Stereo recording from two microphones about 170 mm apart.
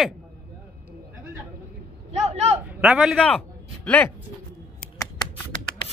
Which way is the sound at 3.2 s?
10° left (ahead or behind).